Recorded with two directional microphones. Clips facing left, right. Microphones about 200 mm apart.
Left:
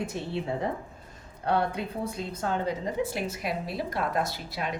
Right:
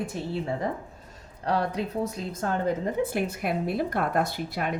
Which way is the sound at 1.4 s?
40° right (ahead or behind).